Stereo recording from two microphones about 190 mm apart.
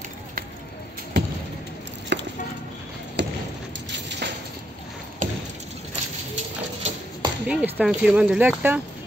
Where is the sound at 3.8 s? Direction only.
65° right (ahead or behind).